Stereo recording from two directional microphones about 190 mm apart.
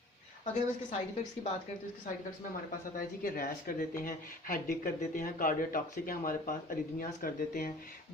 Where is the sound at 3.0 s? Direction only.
50° left (ahead or behind).